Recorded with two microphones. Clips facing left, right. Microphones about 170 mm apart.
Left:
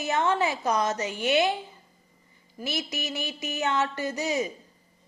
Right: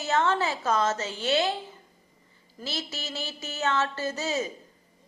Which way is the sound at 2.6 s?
15° left (ahead or behind).